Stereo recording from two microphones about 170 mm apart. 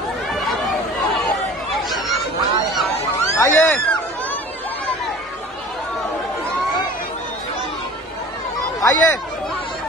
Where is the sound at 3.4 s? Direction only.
15° left (ahead or behind).